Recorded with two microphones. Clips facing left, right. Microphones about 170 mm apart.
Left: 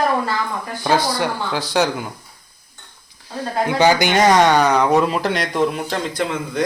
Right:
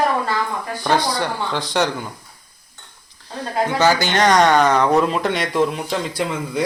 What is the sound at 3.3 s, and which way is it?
Speech, 15° left (ahead or behind).